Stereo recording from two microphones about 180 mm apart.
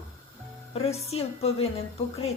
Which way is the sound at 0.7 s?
35° left (ahead or behind).